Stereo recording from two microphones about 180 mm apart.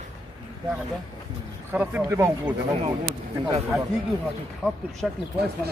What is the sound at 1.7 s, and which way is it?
Speech, 10° right (ahead or behind).